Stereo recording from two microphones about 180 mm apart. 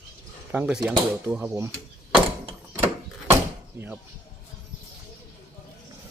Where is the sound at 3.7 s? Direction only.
10° right (ahead or behind).